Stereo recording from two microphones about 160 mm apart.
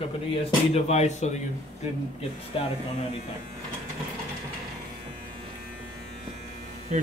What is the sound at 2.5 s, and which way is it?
Speech, 35° left (ahead or behind).